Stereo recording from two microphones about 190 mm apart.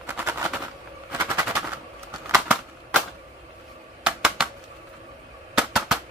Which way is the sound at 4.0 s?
5° right (ahead or behind).